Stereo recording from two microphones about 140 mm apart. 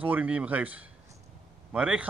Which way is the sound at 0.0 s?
10° right (ahead or behind).